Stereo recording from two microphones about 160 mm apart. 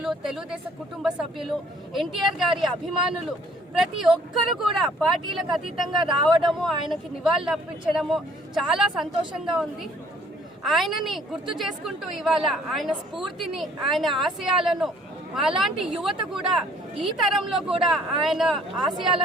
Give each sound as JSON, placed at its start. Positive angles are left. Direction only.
{"t": 0.0, "sound": "speech", "side_deg": -5}
{"t": 3.8, "sound": "speech", "side_deg": 0}
{"t": 5.9, "sound": "speech", "side_deg": -30}
{"t": 6.6, "sound": "speech", "side_deg": 0}